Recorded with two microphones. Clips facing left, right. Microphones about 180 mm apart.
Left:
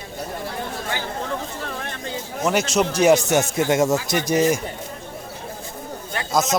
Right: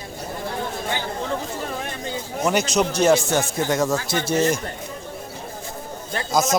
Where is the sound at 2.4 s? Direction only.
Centre (ahead or behind).